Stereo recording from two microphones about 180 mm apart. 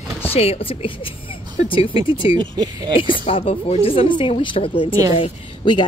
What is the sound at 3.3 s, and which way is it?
Speech, 30° left (ahead or behind).